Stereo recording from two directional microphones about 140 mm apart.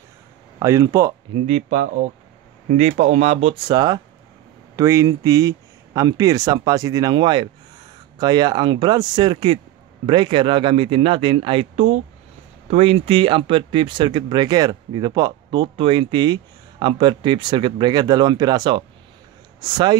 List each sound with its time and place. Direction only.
0.6 s speech: 20° right (ahead or behind)
1.3 s speech: 50° right (ahead or behind); by 20.0 s 30° right (ahead or behind)